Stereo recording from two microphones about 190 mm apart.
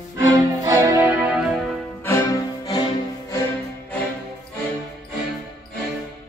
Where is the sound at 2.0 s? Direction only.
15° left (ahead or behind).